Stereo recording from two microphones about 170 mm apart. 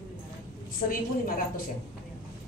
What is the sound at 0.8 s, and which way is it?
Speech, 55° left (ahead or behind).